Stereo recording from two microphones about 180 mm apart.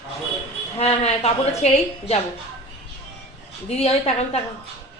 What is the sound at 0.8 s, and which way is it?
A woman's voice, 35° left (ahead or behind).